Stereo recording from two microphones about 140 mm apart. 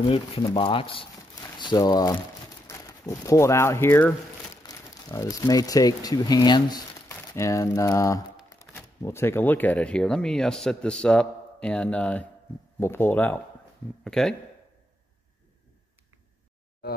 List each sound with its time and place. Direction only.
0.0 s speech: 40° left (ahead or behind)
1.3 s crumpling: 30° left (ahead or behind)
2.6 s speech: 25° left (ahead or behind); by 14.3 s 5° left (ahead or behind)